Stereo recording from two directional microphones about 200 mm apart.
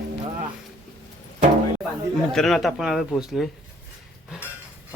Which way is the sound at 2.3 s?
Centre (ahead or behind).